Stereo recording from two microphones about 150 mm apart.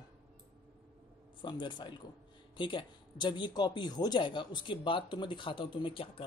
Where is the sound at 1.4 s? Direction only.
30° left (ahead or behind).